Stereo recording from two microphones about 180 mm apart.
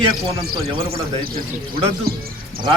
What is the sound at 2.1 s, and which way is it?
Speech, 60° right (ahead or behind).